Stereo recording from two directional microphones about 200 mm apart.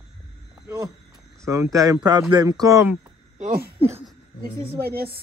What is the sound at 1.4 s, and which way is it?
Speech, 15° right (ahead or behind).